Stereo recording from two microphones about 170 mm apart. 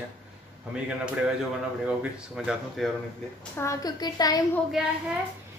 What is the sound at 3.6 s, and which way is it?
Speech, 20° left (ahead or behind).